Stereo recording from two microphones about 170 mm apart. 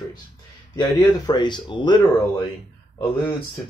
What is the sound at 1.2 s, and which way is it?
Speech, 25° left (ahead or behind).